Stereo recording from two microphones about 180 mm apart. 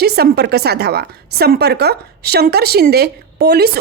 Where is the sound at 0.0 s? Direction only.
65° right (ahead or behind).